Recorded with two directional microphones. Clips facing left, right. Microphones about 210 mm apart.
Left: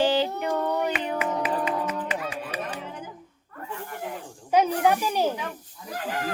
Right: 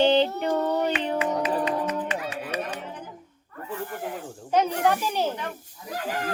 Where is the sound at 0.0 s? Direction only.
25° right (ahead or behind).